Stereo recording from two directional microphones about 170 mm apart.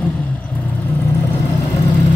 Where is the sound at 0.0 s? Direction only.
10° left (ahead or behind).